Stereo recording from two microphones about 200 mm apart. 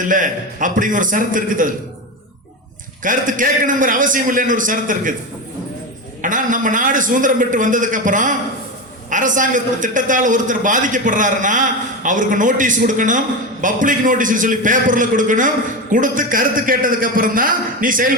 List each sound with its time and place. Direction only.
0.0 s a man's voice: 40° right (ahead or behind)
3.0 s a man's voice: 40° right (ahead or behind)
6.2 s a man's voice: 40° right (ahead or behind)